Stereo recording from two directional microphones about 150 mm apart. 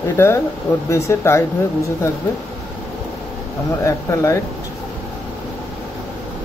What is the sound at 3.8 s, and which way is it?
Speech, 20° left (ahead or behind).